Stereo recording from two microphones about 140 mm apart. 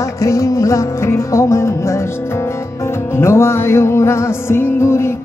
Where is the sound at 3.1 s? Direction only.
20° left (ahead or behind).